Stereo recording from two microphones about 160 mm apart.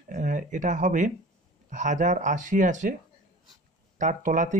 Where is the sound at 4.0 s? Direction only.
55° right (ahead or behind).